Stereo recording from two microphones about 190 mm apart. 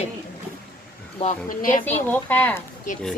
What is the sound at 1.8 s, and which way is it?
Speech, 10° left (ahead or behind).